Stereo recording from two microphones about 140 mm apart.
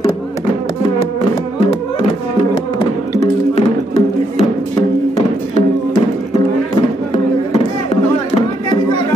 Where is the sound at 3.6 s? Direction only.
50° left (ahead or behind).